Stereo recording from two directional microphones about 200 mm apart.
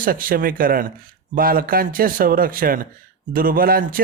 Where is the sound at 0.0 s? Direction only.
45° right (ahead or behind).